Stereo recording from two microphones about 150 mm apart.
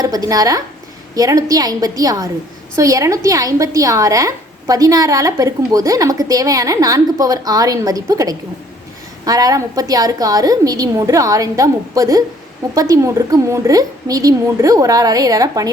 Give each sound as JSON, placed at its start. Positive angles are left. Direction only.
{"t": 0.0, "sound": "a woman's voice", "side_deg": -25}